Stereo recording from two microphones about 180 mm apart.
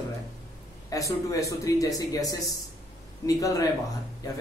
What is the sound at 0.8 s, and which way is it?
Speech, 20° left (ahead or behind).